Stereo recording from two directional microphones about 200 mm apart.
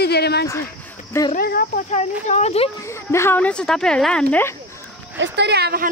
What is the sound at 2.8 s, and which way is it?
Speech, 15° left (ahead or behind).